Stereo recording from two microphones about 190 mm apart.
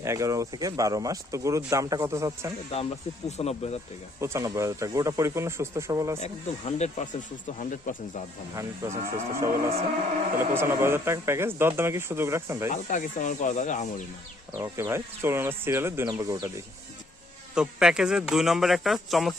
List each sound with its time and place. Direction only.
0.0 s speech: 15° right (ahead or behind)
3.2 s speech: 35° left (ahead or behind)
4.2 s speech: 15° right (ahead or behind)
6.1 s speech: 35° left (ahead or behind)
8.5 s speech: 15° right (ahead or behind)
12.7 s speech: 40° left (ahead or behind)
14.6 s speech: 15° right (ahead or behind)
17.5 s speech: 5° right (ahead or behind)